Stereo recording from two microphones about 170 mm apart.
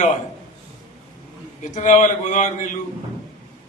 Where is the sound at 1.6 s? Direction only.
45° left (ahead or behind).